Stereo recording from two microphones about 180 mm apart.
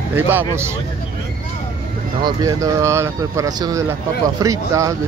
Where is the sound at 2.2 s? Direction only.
20° right (ahead or behind).